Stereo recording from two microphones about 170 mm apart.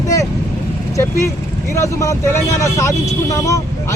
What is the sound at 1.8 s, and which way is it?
Speech, 20° left (ahead or behind).